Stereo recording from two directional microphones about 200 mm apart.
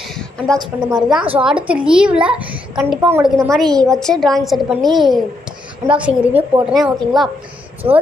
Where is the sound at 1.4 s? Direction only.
5° right (ahead or behind).